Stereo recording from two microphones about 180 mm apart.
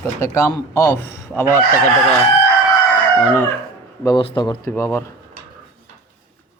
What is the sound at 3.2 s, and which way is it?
Speech, 15° left (ahead or behind).